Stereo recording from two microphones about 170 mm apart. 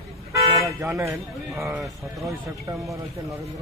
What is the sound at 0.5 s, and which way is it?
Toot, 15° right (ahead or behind).